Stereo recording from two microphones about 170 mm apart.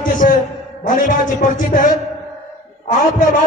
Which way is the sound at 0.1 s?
50° left (ahead or behind).